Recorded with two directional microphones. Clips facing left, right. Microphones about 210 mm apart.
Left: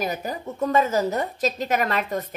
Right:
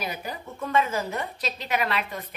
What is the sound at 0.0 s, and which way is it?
Speech, 45° left (ahead or behind).